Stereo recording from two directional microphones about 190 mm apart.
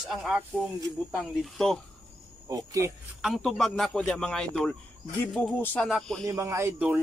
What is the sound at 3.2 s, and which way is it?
Speech, centre (ahead or behind).